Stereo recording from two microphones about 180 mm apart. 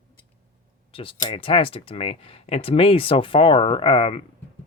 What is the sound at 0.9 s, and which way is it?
Speech, 30° left (ahead or behind).